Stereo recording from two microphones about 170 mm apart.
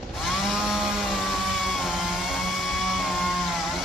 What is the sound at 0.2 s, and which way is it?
Chainsaw, centre (ahead or behind).